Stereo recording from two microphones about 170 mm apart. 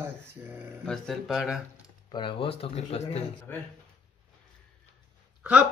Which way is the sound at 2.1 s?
30° left (ahead or behind).